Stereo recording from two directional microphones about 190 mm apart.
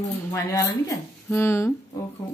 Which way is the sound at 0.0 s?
15° left (ahead or behind).